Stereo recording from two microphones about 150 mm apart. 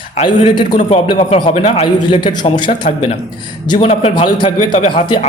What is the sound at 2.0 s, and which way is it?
Speech, 30° left (ahead or behind).